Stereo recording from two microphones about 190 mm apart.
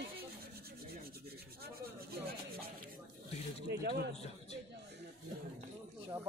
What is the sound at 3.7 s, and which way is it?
Speech, 60° right (ahead or behind).